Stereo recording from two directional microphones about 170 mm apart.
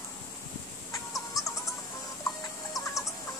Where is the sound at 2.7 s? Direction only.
20° left (ahead or behind).